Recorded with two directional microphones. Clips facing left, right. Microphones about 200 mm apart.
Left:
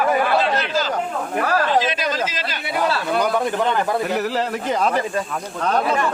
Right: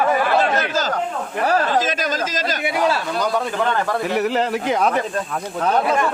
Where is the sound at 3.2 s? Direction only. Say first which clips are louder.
Left 2 dB; 15° left (ahead or behind).